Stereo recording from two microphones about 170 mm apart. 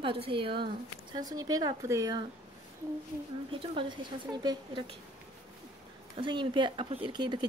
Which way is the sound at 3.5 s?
30° right (ahead or behind).